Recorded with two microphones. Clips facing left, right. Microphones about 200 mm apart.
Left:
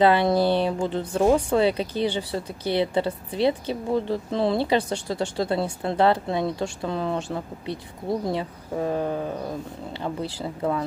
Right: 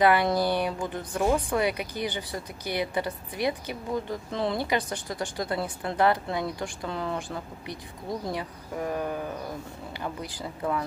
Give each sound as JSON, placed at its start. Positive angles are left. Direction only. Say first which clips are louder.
{"t": 0.0, "sound": "a woman's voice", "louder": "left 4 dB", "side_deg": 25}